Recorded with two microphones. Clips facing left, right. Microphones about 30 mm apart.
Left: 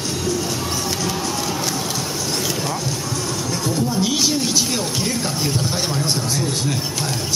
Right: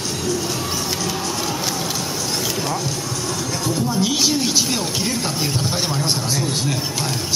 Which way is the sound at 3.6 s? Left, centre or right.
Centre.